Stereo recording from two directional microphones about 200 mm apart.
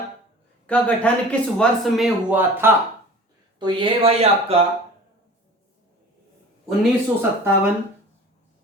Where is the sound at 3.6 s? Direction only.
25° right (ahead or behind).